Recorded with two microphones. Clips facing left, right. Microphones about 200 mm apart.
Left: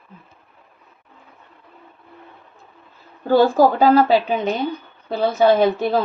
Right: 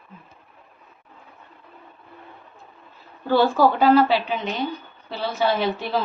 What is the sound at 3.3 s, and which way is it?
Speech, 45° left (ahead or behind).